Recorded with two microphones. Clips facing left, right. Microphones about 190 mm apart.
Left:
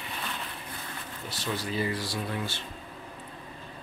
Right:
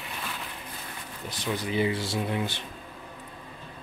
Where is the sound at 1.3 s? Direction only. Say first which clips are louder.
Right 3 dB; 15° right (ahead or behind).